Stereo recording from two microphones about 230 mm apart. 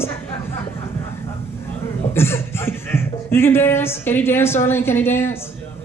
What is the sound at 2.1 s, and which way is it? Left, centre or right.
Speech, centre.